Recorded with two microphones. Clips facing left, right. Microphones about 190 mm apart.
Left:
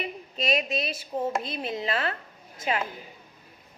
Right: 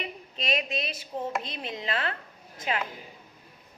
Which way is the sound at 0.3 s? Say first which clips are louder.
Left 3 dB; 40° left (ahead or behind).